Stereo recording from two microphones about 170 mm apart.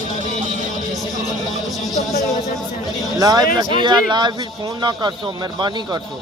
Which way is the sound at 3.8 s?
25° right (ahead or behind).